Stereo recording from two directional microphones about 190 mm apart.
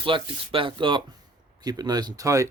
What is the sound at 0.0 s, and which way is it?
Speech, 25° right (ahead or behind).